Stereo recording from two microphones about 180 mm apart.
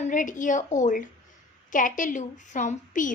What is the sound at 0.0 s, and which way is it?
A woman's voice, 45° left (ahead or behind).